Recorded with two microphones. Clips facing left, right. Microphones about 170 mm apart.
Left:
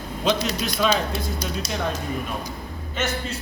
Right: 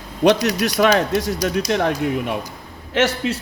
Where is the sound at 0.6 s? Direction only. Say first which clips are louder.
Right 6 dB; 70° right (ahead or behind).